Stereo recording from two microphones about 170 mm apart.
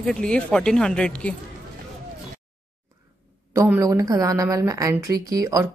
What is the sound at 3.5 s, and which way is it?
A woman's voice, 15° right (ahead or behind).